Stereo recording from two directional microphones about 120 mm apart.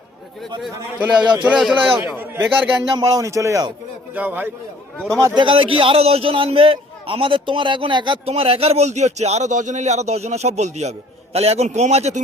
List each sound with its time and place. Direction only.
1.1 s speech: 40° right (ahead or behind)
1.4 s speech: 5° right (ahead or behind)
2.9 s a man's voice: 30° right (ahead or behind)
4.1 s speech: 15° right (ahead or behind)
4.9 s a man's voice: 5° left (ahead or behind)
5.2 s speech: 40° right (ahead or behind)
8.3 s a man's voice: 55° right (ahead or behind)